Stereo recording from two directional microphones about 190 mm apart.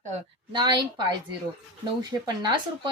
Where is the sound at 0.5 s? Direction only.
25° right (ahead or behind).